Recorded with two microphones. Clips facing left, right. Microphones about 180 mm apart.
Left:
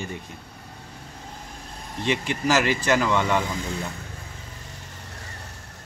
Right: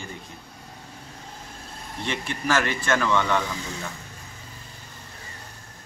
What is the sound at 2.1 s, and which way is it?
A man's voice, 20° left (ahead or behind).